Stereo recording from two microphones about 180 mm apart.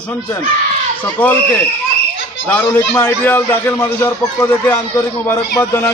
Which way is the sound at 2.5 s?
10° left (ahead or behind).